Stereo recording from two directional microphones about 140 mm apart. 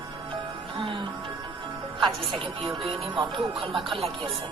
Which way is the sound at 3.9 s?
40° right (ahead or behind).